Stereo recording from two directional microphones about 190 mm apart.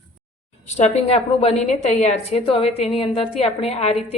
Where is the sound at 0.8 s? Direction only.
35° left (ahead or behind).